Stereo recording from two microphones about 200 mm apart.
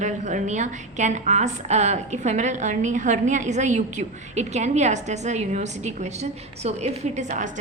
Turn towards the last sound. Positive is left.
turn(degrees=-40)  # may be behind; listen again after turning